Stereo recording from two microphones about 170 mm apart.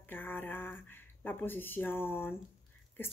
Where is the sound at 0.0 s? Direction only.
10° left (ahead or behind).